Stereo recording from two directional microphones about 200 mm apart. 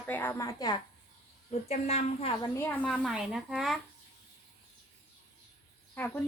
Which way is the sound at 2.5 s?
5° left (ahead or behind).